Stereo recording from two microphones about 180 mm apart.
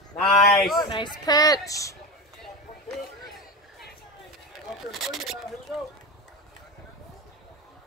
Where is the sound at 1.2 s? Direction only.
20° left (ahead or behind).